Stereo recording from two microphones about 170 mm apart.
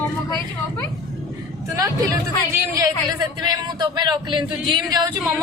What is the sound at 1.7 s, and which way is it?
Speech, 20° right (ahead or behind).